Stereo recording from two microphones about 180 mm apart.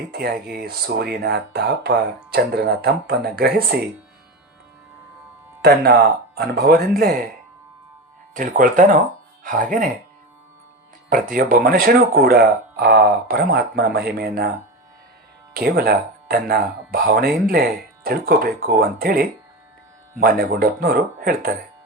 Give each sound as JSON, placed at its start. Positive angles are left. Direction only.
{"t": 0.1, "sound": "speech", "side_deg": -60}
{"t": 5.6, "sound": "speech", "side_deg": -60}
{"t": 8.3, "sound": "speech", "side_deg": -45}
{"t": 11.1, "sound": "speech", "side_deg": -50}
{"t": 15.5, "sound": "speech", "side_deg": -55}